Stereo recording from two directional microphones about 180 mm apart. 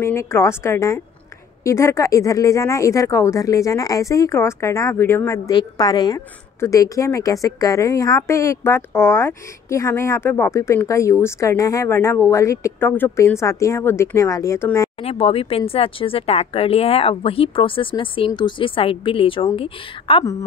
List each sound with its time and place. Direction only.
0.0 s speech: 15° left (ahead or behind)
15.0 s speech: 35° left (ahead or behind)